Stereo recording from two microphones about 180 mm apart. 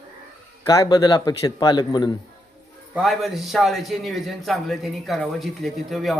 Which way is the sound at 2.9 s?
Centre (ahead or behind).